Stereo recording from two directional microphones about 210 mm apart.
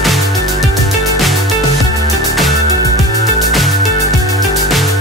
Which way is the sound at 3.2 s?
Centre (ahead or behind).